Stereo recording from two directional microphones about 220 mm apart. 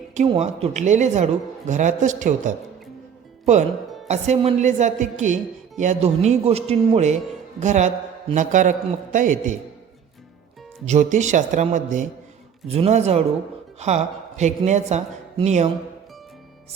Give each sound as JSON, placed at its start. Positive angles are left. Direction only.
{"t": 0.3, "sound": "speech", "side_deg": -30}
{"t": 10.8, "sound": "a man's voice", "side_deg": -35}